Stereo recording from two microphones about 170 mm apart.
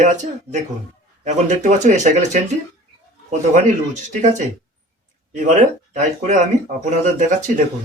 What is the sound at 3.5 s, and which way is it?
Speech, 45° right (ahead or behind).